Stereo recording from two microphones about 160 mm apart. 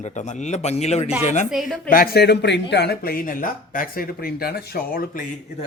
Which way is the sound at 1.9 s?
70° left (ahead or behind).